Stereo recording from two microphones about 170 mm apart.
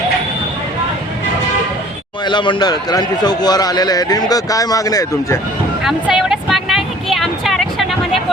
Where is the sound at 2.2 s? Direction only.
25° left (ahead or behind).